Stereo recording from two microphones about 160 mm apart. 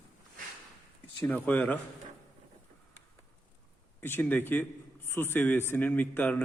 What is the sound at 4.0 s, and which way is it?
A man's voice, 15° left (ahead or behind).